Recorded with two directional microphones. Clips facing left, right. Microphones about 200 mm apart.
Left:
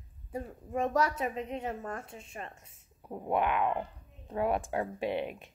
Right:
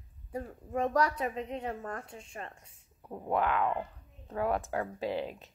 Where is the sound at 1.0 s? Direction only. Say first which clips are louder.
Even; 25° left (ahead or behind).